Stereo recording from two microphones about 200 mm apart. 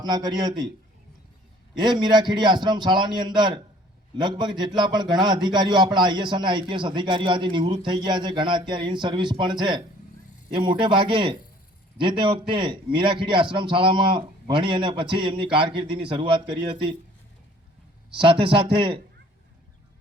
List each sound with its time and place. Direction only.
0.0 s a man's voice: 20° right (ahead or behind)
1.7 s a man's voice: 20° right (ahead or behind)
18.1 s a man's voice: 25° right (ahead or behind)